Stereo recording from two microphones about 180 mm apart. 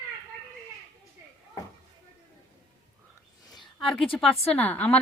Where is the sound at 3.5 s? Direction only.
Centre (ahead or behind).